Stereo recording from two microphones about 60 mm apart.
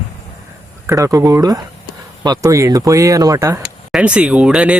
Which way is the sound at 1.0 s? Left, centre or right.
Right.